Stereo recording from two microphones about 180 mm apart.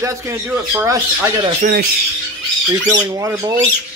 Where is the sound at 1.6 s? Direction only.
60° right (ahead or behind).